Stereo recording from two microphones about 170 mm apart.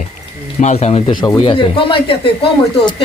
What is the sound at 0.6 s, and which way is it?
Speech, 40° left (ahead or behind).